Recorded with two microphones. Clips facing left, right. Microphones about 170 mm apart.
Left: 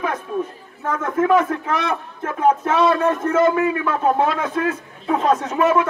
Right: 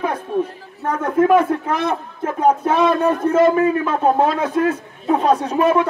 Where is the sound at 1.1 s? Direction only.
10° right (ahead or behind).